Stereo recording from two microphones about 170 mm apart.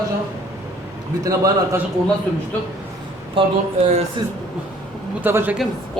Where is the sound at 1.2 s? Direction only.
20° right (ahead or behind).